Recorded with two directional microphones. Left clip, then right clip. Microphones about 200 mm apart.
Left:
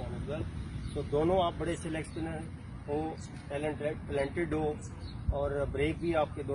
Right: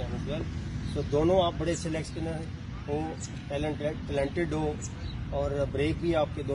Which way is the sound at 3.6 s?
15° right (ahead or behind).